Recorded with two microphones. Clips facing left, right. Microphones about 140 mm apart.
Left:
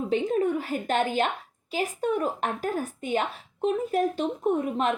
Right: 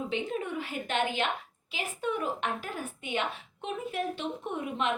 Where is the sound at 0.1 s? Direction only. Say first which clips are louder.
Left 8 dB; 40° left (ahead or behind).